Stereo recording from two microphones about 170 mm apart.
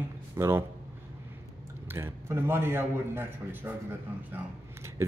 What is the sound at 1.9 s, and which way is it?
Speech, 15° right (ahead or behind).